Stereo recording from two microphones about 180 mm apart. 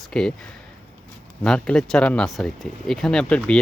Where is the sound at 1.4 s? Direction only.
5° left (ahead or behind).